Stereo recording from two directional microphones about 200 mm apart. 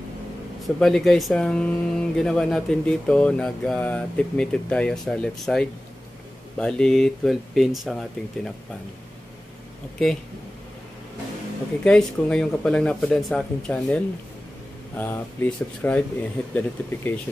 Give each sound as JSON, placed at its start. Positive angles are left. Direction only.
{"t": 0.7, "sound": "speech", "side_deg": 0}
{"t": 11.8, "sound": "speech", "side_deg": 5}